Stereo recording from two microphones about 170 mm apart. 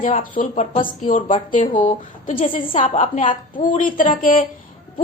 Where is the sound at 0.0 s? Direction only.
50° left (ahead or behind).